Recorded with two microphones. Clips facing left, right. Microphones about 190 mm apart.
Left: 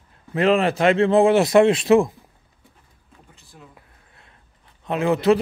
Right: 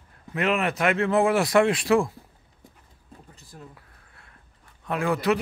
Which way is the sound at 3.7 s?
20° left (ahead or behind).